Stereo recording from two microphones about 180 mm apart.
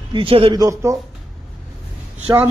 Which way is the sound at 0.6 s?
20° right (ahead or behind).